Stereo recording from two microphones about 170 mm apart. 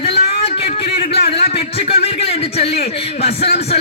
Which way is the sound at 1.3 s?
35° left (ahead or behind).